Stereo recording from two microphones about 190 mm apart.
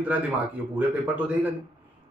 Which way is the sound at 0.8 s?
5° right (ahead or behind).